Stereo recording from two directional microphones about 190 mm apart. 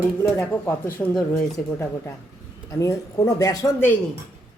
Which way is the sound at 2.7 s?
20° left (ahead or behind).